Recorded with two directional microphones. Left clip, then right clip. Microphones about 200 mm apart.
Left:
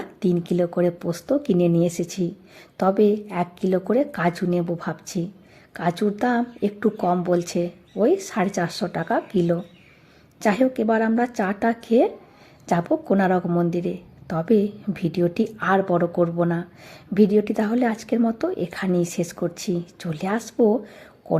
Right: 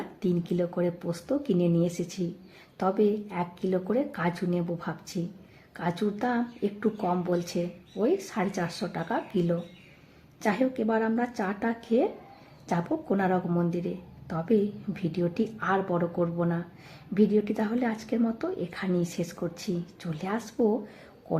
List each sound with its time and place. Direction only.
0.2 s a woman's voice: 40° left (ahead or behind)